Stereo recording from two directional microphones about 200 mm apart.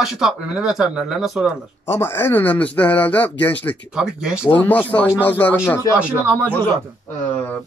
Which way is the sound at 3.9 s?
5° right (ahead or behind).